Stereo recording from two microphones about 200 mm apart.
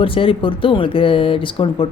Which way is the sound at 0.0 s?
25° left (ahead or behind).